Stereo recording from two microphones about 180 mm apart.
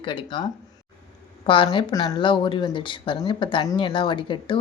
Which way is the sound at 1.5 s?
30° left (ahead or behind).